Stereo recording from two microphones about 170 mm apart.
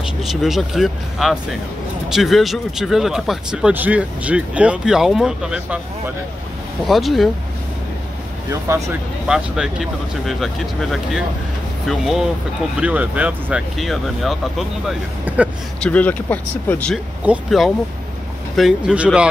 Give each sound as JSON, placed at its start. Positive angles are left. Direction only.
{"t": 0.0, "sound": "speech", "side_deg": 0}
{"t": 6.9, "sound": "speech", "side_deg": 0}
{"t": 8.5, "sound": "speech", "side_deg": -15}
{"t": 9.3, "sound": "speech", "side_deg": -5}
{"t": 15.8, "sound": "speech", "side_deg": 10}
{"t": 17.2, "sound": "speech", "side_deg": -5}